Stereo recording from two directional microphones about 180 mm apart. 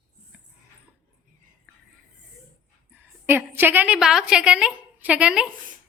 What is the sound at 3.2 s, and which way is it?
A woman's voice, 10° right (ahead or behind).